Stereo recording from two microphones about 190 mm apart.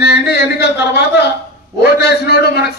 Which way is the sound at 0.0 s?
60° left (ahead or behind).